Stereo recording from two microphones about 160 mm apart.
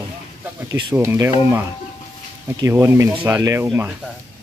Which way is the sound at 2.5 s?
15° right (ahead or behind).